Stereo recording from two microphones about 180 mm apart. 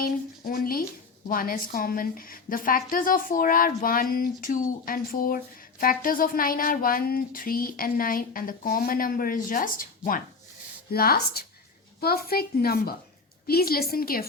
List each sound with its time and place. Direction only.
0.0 s a woman's voice: 55° left (ahead or behind)